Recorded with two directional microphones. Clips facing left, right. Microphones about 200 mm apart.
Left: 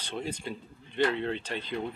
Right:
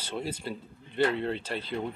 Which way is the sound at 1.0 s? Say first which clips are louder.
Right 1 dB; 40° right (ahead or behind).